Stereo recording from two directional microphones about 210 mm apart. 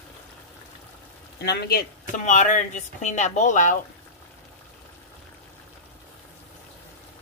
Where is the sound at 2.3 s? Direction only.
35° left (ahead or behind).